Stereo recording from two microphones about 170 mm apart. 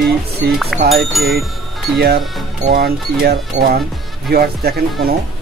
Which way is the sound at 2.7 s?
65° right (ahead or behind).